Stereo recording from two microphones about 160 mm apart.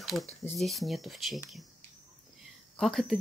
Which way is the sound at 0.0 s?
Centre (ahead or behind).